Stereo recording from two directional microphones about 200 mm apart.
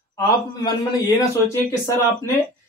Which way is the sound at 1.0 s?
15° left (ahead or behind).